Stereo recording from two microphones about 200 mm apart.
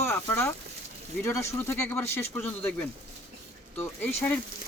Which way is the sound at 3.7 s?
10° left (ahead or behind).